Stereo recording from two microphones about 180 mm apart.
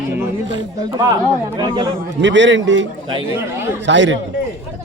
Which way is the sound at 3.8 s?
85° right.